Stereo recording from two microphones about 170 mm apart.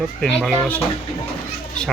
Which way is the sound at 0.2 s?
5° left (ahead or behind).